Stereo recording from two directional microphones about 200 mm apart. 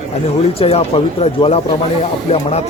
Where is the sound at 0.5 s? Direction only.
30° left (ahead or behind).